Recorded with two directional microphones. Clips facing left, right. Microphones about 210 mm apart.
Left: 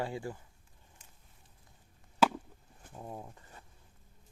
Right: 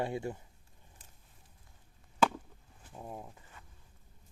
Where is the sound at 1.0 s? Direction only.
35° right (ahead or behind).